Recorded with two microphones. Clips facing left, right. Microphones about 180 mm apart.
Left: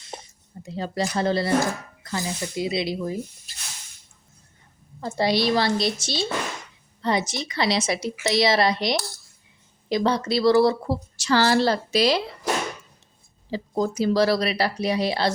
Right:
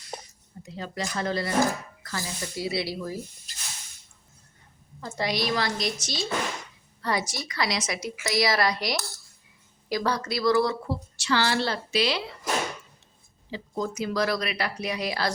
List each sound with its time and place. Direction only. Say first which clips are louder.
0.0 s a sound: even; 25° left (ahead or behind)
2.0 s a woman's voice: left 6 dB; 20° left (ahead or behind)
4.9 s a woman's voice: left 6 dB; 30° left (ahead or behind)
13.5 s a woman's voice: left 6 dB; 35° left (ahead or behind)